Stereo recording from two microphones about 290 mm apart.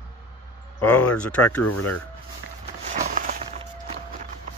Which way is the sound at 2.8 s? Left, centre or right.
Right.